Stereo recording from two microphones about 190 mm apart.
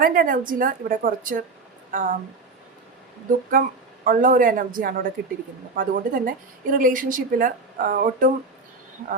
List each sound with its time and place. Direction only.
0.0 s speech: 50° right (ahead or behind)
3.6 s speech: 45° right (ahead or behind)